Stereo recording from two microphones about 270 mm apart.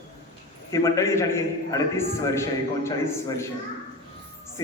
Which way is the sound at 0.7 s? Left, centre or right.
Centre.